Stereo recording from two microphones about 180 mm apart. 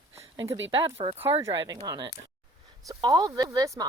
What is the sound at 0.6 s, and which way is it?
Speech, 30° right (ahead or behind).